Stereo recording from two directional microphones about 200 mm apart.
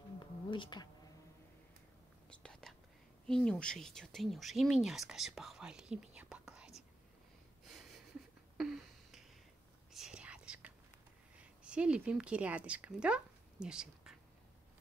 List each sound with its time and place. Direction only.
0.2 s a sound: 25° left (ahead or behind)
2.2 s whispering: 5° left (ahead or behind)
3.3 s speech: 5° left (ahead or behind)
7.6 s a sound: centre (ahead or behind)
9.9 s whispering: 5° right (ahead or behind)
11.3 s speech: 5° right (ahead or behind)